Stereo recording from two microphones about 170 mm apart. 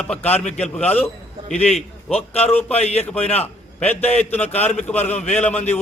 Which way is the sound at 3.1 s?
5° left (ahead or behind).